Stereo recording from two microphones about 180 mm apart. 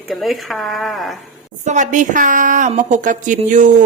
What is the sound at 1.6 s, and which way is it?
A woman's voice, 40° right (ahead or behind).